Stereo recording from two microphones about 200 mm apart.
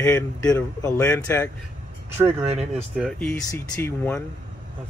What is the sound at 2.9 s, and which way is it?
Speech, centre (ahead or behind).